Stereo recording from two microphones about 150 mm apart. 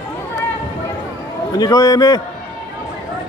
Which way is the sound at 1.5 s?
25° left (ahead or behind).